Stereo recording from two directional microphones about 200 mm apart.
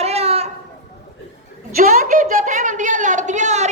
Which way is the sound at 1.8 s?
40° right (ahead or behind).